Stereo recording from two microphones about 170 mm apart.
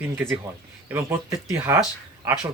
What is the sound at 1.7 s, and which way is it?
Speech, 15° right (ahead or behind).